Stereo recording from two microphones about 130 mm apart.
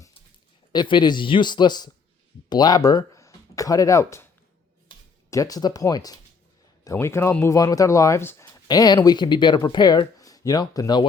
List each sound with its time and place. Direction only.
0.7 s speech: 35° left (ahead or behind)
5.3 s speech: 25° left (ahead or behind)
8.6 s speech: 30° left (ahead or behind)